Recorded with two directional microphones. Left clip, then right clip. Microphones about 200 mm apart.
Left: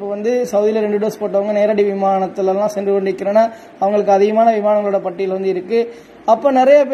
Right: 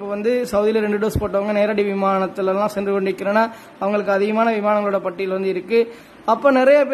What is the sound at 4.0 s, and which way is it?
Speech, 5° right (ahead or behind).